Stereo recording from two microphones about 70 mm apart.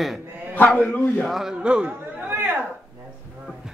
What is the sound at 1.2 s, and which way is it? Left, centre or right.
A man's voice, centre.